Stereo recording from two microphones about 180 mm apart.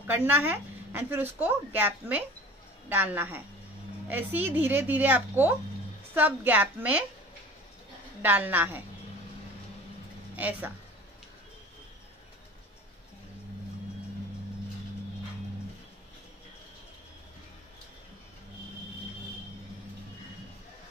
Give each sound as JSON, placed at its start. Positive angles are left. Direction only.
{"t": 0.0, "sound": "a woman's voice", "side_deg": -10}
{"t": 8.2, "sound": "a woman's voice", "side_deg": -10}
{"t": 10.3, "sound": "a woman's voice", "side_deg": -10}